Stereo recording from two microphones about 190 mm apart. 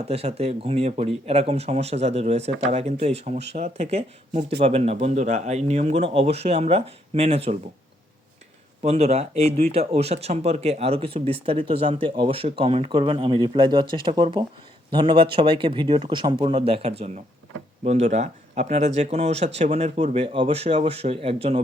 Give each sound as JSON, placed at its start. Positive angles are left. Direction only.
{"t": 0.1, "sound": "speech", "side_deg": -30}
{"t": 8.8, "sound": "speech", "side_deg": -35}